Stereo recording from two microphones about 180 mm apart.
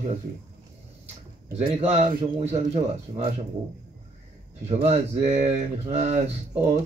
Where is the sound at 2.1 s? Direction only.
35° right (ahead or behind).